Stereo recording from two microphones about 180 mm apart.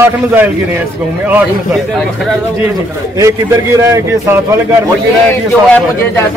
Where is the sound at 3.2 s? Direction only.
15° right (ahead or behind).